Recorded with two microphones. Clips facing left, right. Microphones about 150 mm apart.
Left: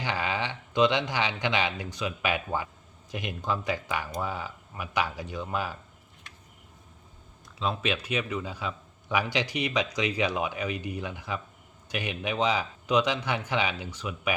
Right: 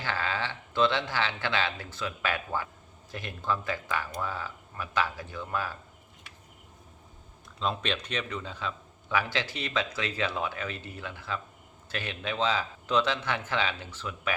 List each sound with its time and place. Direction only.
0.0 s a man's voice: 15° left (ahead or behind)
7.6 s a man's voice: 5° left (ahead or behind)